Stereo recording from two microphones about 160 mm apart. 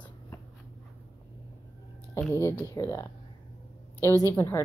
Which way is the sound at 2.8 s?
20° left (ahead or behind).